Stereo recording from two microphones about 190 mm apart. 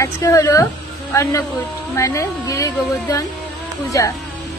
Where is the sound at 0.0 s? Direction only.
15° left (ahead or behind).